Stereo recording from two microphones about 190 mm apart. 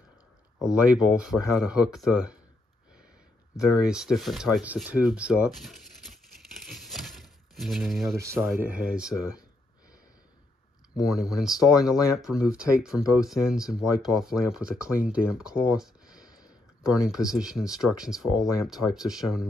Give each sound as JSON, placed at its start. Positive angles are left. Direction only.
{"t": 0.6, "sound": "speech", "side_deg": -5}
{"t": 3.5, "sound": "speech", "side_deg": -5}
{"t": 8.2, "sound": "speech", "side_deg": -15}
{"t": 11.0, "sound": "speech", "side_deg": 0}
{"t": 16.2, "sound": "a sound", "side_deg": 20}
{"t": 16.9, "sound": "speech", "side_deg": -5}